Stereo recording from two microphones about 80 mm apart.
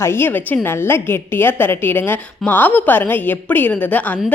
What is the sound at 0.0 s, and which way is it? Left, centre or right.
A woman's voice, left.